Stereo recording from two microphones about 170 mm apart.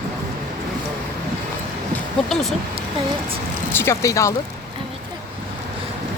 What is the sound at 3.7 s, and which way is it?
Speech, 15° left (ahead or behind).